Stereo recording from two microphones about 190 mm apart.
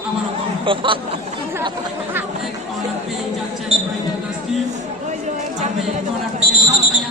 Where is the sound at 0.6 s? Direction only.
25° right (ahead or behind).